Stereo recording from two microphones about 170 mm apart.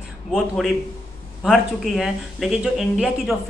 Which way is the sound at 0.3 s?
Centre (ahead or behind).